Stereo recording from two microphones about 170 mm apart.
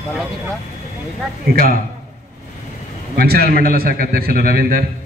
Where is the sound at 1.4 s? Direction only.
60° right (ahead or behind).